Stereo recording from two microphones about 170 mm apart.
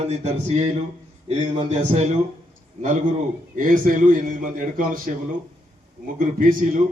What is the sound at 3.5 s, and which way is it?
A man's voice, 50° right (ahead or behind).